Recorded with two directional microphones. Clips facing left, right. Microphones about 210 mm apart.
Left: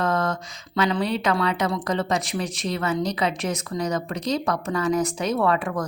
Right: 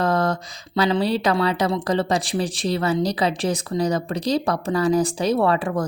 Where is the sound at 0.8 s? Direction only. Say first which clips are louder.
Right 3 dB; 30° right (ahead or behind).